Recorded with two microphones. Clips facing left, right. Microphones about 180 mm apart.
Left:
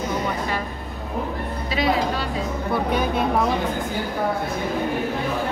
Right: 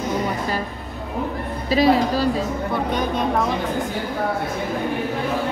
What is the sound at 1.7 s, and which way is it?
Speech, 35° right (ahead or behind).